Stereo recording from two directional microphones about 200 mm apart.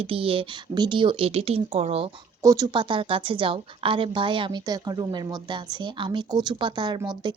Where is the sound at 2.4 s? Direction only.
15° right (ahead or behind).